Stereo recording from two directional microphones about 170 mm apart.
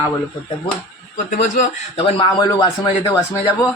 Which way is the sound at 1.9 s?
35° left (ahead or behind).